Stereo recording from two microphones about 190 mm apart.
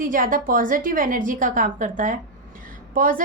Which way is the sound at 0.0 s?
45° right (ahead or behind).